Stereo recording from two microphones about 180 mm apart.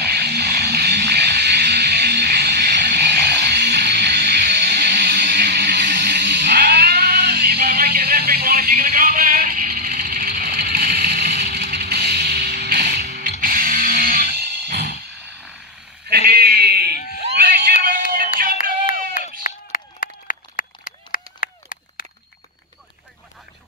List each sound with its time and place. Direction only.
0.0 s music: 60° right (ahead or behind)
16.1 s sheep: 55° right (ahead or behind)
18.1 s music: 55° right (ahead or behind)
19.1 s a sound: 50° left (ahead or behind)